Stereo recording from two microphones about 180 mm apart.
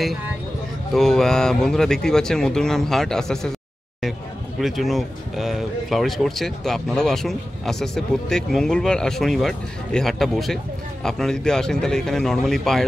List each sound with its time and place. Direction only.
0.9 s speech: centre (ahead or behind)
4.6 s speech: centre (ahead or behind)